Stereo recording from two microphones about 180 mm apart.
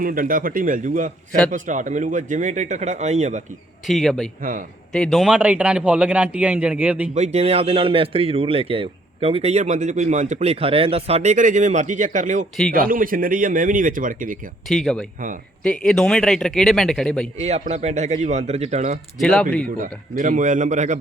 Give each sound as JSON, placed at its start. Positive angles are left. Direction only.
{"t": 0.0, "sound": "speech", "side_deg": -50}
{"t": 3.8, "sound": "a man's voice", "side_deg": 0}
{"t": 7.1, "sound": "speech", "side_deg": -40}
{"t": 14.7, "sound": "speech", "side_deg": 0}
{"t": 17.3, "sound": "speech", "side_deg": -40}
{"t": 19.2, "sound": "speech", "side_deg": 0}
{"t": 19.6, "sound": "speech", "side_deg": -50}